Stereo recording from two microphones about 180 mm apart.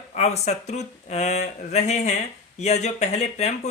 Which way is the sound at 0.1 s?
40° left (ahead or behind).